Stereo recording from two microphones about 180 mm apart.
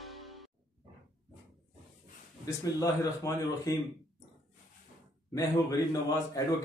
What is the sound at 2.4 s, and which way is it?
Speech, 15° left (ahead or behind).